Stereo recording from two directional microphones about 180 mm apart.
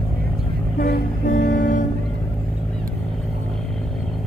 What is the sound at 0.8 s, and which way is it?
Music, 45° left (ahead or behind).